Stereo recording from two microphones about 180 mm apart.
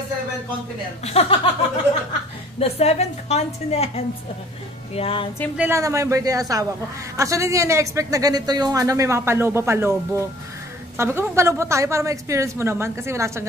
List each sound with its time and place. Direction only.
1.0 s a woman's voice: 35° left (ahead or behind)
2.6 s a woman's voice: 35° left (ahead or behind)
5.6 s speech: 15° right (ahead or behind)